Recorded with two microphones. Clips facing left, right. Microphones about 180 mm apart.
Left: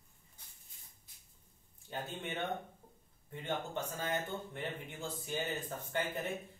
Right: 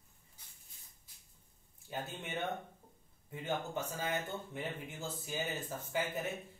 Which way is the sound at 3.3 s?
5° right (ahead or behind).